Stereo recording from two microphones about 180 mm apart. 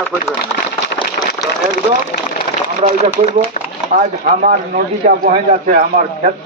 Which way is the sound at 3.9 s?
45° right (ahead or behind).